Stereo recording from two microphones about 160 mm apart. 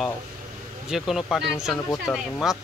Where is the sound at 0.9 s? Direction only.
Centre (ahead or behind).